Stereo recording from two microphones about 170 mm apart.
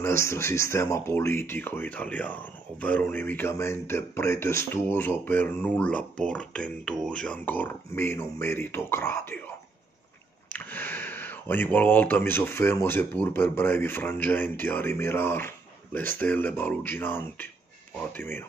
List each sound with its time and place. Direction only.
0.2 s speech: 15° left (ahead or behind)
10.5 s speech: 10° left (ahead or behind)